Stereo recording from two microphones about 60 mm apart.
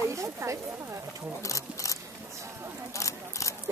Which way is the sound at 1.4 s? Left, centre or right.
Left.